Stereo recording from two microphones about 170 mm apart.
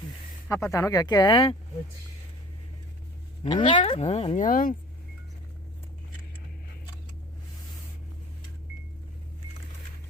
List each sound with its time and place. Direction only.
0.4 s speech: 15° left (ahead or behind)
3.4 s speech: 30° left (ahead or behind)
4.4 s speech: 55° left (ahead or behind)